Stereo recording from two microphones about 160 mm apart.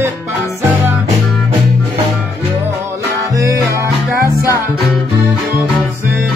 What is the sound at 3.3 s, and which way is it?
Music, 20° right (ahead or behind).